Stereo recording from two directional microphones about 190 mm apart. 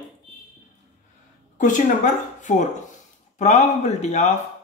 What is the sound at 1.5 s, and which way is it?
Speech, 40° left (ahead or behind).